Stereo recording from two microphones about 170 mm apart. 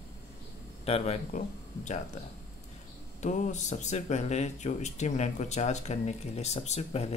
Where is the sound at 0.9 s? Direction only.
40° left (ahead or behind).